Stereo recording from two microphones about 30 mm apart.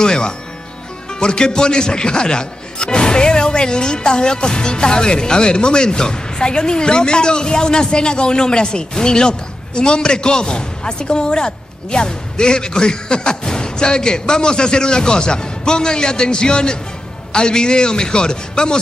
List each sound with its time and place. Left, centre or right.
0.0 s music: left
1.2 s a man's voice: left